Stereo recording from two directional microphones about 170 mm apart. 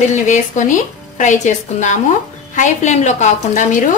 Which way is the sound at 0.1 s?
45° left (ahead or behind).